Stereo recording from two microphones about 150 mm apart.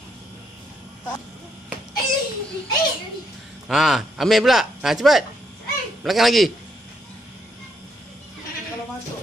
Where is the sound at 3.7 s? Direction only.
Centre (ahead or behind).